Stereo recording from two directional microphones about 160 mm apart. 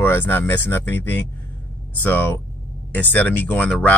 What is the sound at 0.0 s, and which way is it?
Speech, 15° left (ahead or behind).